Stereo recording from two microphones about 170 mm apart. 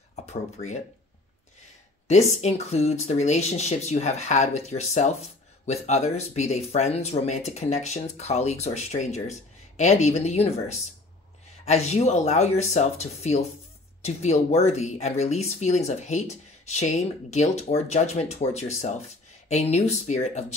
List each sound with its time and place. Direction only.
0.1 s speech: 40° left (ahead or behind)
2.0 s speech: 40° left (ahead or behind)